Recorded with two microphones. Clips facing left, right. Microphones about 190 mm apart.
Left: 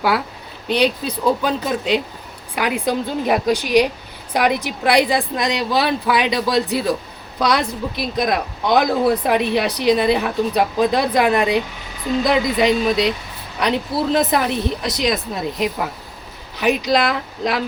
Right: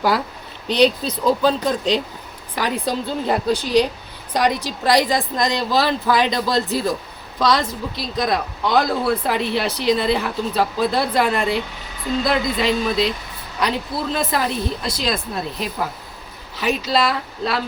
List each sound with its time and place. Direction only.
0.7 s speech: 10° left (ahead or behind)